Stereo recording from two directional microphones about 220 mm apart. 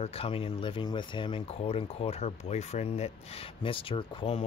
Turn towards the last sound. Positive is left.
turn(degrees=25)  # may be behind; listen again after turning